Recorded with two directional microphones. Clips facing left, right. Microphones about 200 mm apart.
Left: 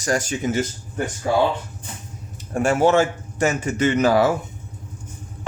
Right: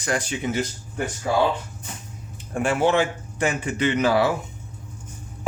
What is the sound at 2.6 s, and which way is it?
A man's voice, 45° left (ahead or behind).